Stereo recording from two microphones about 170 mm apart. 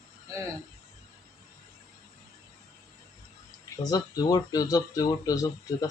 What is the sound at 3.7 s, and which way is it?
Speech, 20° left (ahead or behind).